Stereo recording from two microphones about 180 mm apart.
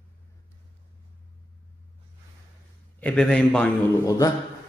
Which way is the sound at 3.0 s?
5° left (ahead or behind).